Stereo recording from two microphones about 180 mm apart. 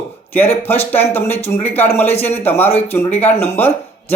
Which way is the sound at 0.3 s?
10° left (ahead or behind).